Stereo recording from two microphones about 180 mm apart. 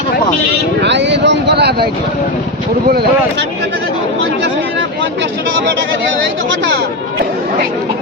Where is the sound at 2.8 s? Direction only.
60° right (ahead or behind).